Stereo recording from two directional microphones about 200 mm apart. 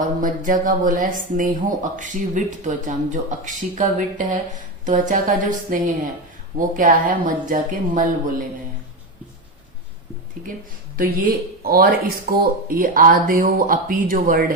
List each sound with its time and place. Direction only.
0.2 s speech: 40° right (ahead or behind)
10.9 s speech: 45° right (ahead or behind)